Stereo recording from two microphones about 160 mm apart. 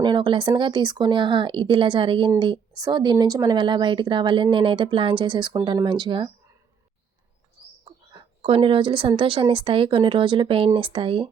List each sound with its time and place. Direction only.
0.0 s a woman's voice: 30° right (ahead or behind)
8.4 s speech: 35° right (ahead or behind)